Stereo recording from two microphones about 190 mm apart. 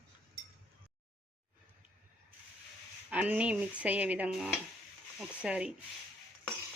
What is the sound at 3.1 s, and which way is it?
Speech, 5° right (ahead or behind).